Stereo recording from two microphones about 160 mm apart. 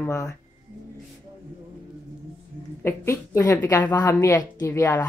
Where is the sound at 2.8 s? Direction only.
15° left (ahead or behind).